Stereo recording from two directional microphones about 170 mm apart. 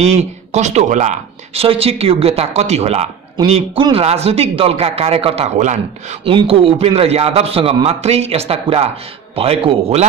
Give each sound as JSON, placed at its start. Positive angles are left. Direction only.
{"t": 0.0, "sound": "a man's voice", "side_deg": -40}